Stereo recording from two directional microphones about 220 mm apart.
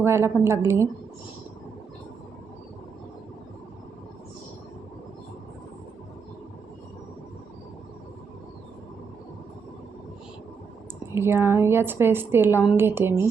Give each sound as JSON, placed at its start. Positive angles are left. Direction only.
{"t": 0.0, "sound": "a woman's voice", "side_deg": -10}
{"t": 11.1, "sound": "a woman's voice", "side_deg": -10}